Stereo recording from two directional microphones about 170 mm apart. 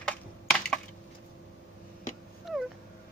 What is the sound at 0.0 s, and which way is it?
Computer keyboard, 5° left (ahead or behind).